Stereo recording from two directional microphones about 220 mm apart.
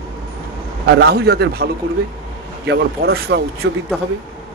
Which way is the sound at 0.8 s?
45° right (ahead or behind).